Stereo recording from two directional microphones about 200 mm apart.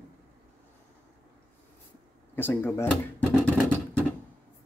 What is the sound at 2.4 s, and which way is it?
Speech, 10° left (ahead or behind).